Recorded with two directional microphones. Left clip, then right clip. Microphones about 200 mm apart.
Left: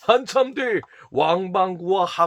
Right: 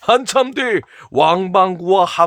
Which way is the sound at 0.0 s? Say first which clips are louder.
Right 4 dB; 40° right (ahead or behind).